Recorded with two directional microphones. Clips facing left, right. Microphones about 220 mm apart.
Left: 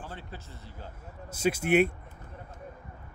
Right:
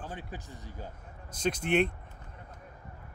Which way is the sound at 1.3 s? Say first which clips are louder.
Left 4 dB; 5° left (ahead or behind).